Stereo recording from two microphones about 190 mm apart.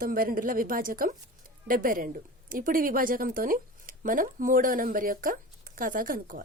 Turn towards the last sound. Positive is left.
turn(degrees=-45)  # may be behind; listen again after turning